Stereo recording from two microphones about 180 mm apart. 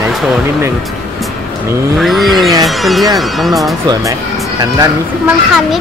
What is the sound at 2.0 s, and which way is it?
Speech, centre (ahead or behind).